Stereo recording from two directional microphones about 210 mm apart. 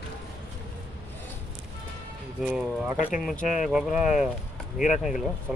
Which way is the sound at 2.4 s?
5° right (ahead or behind).